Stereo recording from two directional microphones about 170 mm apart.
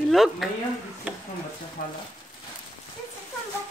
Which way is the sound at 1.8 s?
60° left (ahead or behind).